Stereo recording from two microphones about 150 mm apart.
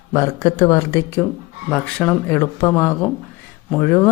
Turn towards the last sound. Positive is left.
turn(degrees=15)  # may be behind; listen again after turning